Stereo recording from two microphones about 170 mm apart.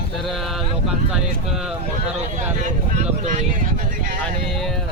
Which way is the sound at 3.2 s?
50° right (ahead or behind).